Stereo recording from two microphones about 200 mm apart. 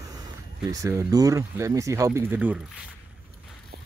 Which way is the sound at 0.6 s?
15° right (ahead or behind).